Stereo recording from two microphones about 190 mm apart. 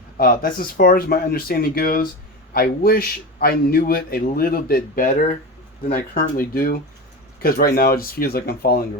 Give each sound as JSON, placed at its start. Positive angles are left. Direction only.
{"t": 0.2, "sound": "a man's voice", "side_deg": 50}